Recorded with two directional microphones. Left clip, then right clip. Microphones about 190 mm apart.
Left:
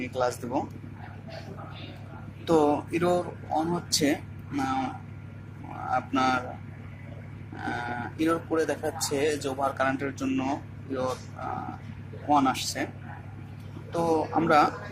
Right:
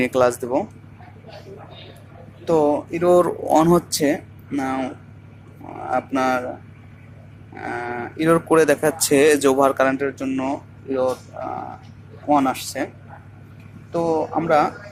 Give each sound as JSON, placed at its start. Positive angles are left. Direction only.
{"t": 0.0, "sound": "speech", "side_deg": -40}
{"t": 2.4, "sound": "speech", "side_deg": -25}
{"t": 5.9, "sound": "speech", "side_deg": -30}
{"t": 7.5, "sound": "speech", "side_deg": -30}
{"t": 13.9, "sound": "speech", "side_deg": -25}